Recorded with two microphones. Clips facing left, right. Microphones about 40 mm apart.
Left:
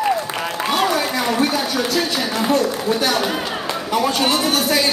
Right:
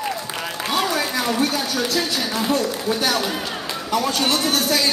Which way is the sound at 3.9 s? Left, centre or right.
Centre.